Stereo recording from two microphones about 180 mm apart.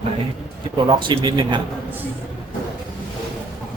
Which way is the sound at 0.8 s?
25° right (ahead or behind).